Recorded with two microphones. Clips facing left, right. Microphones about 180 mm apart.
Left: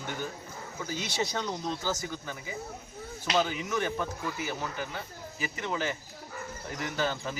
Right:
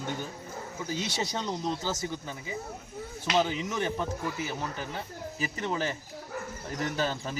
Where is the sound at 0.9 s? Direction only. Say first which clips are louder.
Even; 20° right (ahead or behind).